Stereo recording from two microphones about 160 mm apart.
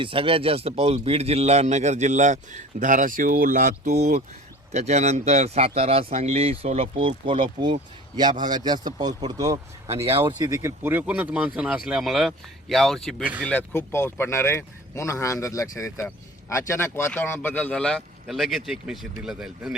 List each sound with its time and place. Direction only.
0.0 s speech: 35° right (ahead or behind); by 3.9 s 60° right (ahead or behind)
3.9 s speech: 45° right (ahead or behind); by 19.7 s 5° right (ahead or behind)